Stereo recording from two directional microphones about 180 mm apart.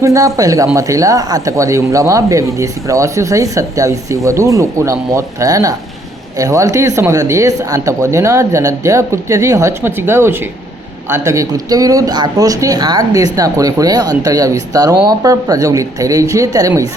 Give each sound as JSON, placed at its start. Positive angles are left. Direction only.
{"t": 0.0, "sound": "speech", "side_deg": -15}